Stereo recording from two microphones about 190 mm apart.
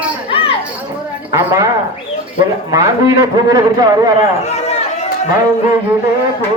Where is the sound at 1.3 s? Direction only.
15° right (ahead or behind).